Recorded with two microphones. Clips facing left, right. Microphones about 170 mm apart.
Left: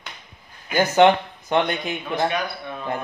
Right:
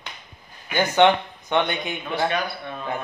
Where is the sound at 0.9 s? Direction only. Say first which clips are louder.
Left 2 dB; 35° left (ahead or behind).